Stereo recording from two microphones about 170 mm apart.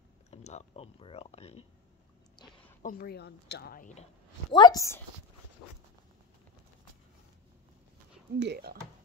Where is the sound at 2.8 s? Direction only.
60° left (ahead or behind).